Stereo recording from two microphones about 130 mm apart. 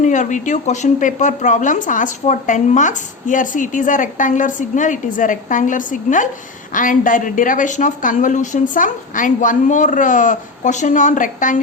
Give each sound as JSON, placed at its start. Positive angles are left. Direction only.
{"t": 0.0, "sound": "a woman's voice", "side_deg": 70}